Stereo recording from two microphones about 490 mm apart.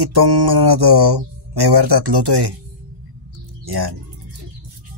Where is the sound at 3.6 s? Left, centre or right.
Right.